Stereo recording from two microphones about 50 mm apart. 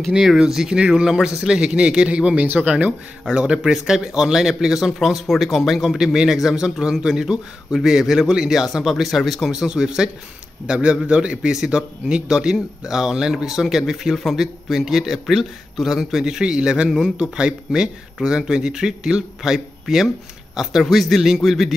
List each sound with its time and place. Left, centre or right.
0.1 s a man's voice: centre
2.4 s speech: right
3.3 s speech: centre
9.6 s a man's voice: centre